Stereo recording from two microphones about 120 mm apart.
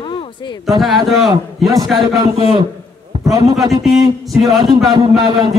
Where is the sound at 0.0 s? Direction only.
45° left (ahead or behind).